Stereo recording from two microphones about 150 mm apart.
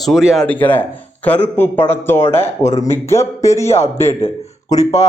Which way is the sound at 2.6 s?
20° left (ahead or behind).